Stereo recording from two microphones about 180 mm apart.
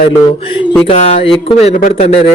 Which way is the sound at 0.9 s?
35° left (ahead or behind).